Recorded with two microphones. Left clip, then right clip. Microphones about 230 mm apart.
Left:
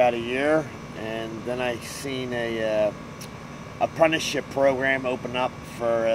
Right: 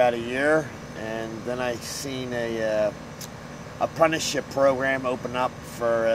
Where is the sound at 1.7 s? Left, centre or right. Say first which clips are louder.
Even; centre.